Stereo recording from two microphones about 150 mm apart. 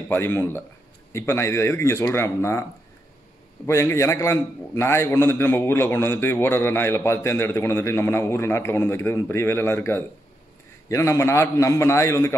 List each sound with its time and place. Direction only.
0.1 s a man's voice: 15° left (ahead or behind)
3.6 s a man's voice: 20° left (ahead or behind)